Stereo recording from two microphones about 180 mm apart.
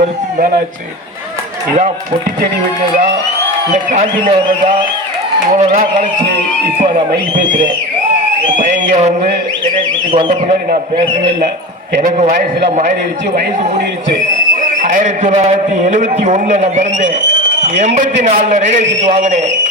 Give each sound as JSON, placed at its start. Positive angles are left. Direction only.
{"t": 3.9, "sound": "a man's voice", "side_deg": -40}
{"t": 8.9, "sound": "a man's voice", "side_deg": -40}
{"t": 11.9, "sound": "a man's voice", "side_deg": -40}
{"t": 14.6, "sound": "a man's voice", "side_deg": -45}